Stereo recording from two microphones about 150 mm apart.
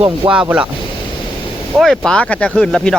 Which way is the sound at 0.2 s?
35° right (ahead or behind).